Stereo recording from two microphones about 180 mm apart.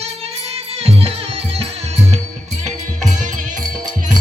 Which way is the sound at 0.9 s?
35° right (ahead or behind).